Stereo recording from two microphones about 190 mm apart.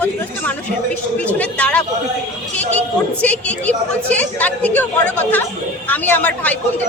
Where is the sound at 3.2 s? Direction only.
5° left (ahead or behind).